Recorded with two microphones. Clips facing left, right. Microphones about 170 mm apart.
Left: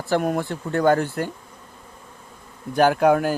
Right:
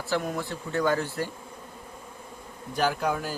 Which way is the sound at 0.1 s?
55° left (ahead or behind).